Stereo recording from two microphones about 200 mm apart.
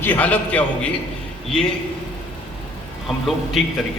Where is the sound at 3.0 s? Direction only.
Centre (ahead or behind).